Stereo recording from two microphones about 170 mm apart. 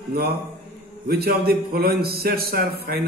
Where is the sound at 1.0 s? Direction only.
65° right (ahead or behind).